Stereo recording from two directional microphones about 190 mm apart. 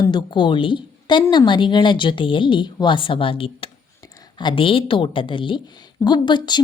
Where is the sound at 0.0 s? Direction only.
25° left (ahead or behind).